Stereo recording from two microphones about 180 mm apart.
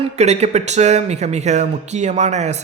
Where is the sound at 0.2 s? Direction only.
35° right (ahead or behind).